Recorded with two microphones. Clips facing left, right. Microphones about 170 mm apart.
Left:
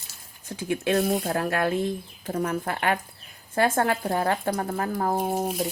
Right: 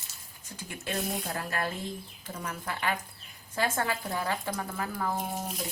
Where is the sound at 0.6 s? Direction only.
70° left (ahead or behind).